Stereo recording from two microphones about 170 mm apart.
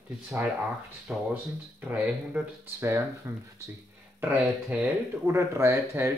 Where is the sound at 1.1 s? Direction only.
10° right (ahead or behind).